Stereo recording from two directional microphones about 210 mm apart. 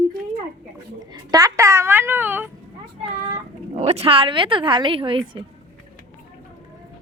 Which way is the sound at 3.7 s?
30° right (ahead or behind).